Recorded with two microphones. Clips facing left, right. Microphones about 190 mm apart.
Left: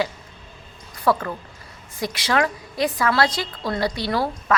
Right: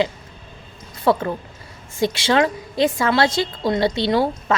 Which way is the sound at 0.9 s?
25° right (ahead or behind).